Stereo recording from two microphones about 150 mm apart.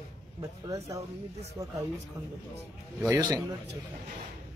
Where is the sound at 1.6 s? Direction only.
30° right (ahead or behind).